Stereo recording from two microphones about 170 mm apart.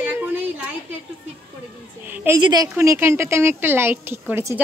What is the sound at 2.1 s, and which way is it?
A woman's voice, 15° right (ahead or behind).